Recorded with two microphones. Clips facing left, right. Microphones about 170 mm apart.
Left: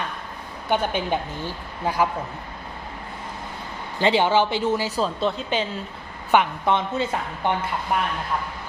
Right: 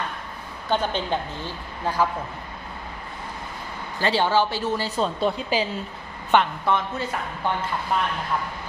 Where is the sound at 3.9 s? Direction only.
20° left (ahead or behind).